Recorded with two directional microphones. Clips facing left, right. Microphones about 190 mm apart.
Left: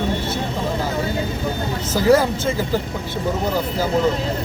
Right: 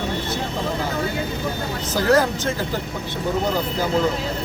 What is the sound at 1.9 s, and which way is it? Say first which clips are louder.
Speech: left 3 dB; 10° left (ahead or behind).